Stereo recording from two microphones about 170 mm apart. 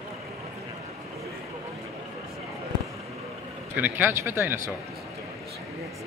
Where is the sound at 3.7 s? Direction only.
10° right (ahead or behind).